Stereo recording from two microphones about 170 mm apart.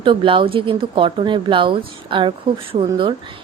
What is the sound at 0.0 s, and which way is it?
A woman's voice, 30° right (ahead or behind).